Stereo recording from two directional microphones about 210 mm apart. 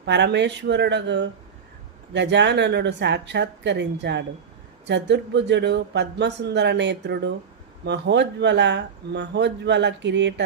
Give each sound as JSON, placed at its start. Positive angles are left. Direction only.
{"t": 0.0, "sound": "speech", "side_deg": -55}